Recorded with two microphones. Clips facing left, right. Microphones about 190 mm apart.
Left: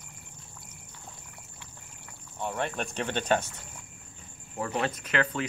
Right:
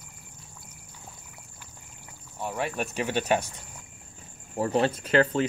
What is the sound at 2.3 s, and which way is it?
Speech, 5° right (ahead or behind).